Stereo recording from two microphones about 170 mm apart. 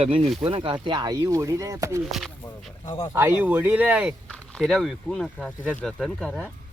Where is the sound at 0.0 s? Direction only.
35° right (ahead or behind); by 2.0 s 20° right (ahead or behind).